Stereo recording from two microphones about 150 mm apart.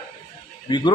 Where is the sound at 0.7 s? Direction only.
30° left (ahead or behind).